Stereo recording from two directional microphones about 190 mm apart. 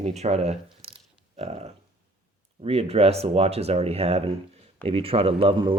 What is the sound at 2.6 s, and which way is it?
A man's voice, 30° right (ahead or behind).